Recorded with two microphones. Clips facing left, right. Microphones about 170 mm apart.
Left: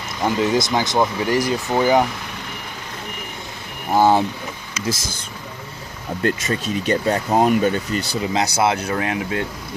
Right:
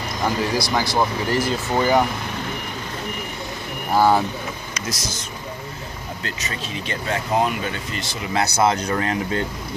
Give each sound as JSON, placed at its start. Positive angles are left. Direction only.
{"t": 0.4, "sound": "speech", "side_deg": 20}
{"t": 3.9, "sound": "speech", "side_deg": 20}
{"t": 6.2, "sound": "speech", "side_deg": 45}
{"t": 8.3, "sound": "speech", "side_deg": 15}